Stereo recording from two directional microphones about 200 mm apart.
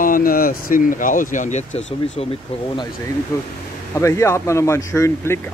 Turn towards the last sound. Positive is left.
turn(degrees=15)  # may be behind; listen again after turning